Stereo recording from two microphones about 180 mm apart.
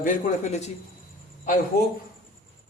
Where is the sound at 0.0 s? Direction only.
40° left (ahead or behind).